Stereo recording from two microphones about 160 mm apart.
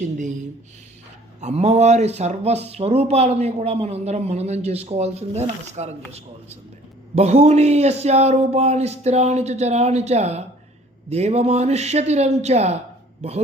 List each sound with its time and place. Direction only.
0.0 s speech: 50° right (ahead or behind)
1.4 s speech: 45° right (ahead or behind)
7.2 s speech: 40° right (ahead or behind)